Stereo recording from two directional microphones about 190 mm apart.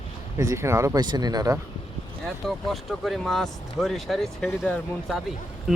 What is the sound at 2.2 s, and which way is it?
Speech, centre (ahead or behind).